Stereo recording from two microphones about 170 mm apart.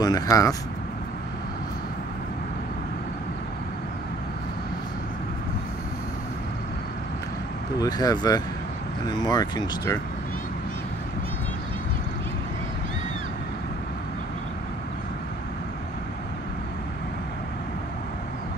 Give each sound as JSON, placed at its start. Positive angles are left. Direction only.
{"t": 0.0, "sound": "speech", "side_deg": 20}
{"t": 7.8, "sound": "speech", "side_deg": 20}